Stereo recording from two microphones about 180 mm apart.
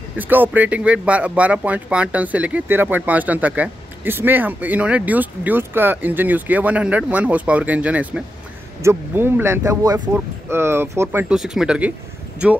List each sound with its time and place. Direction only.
0.2 s speech: 10° right (ahead or behind)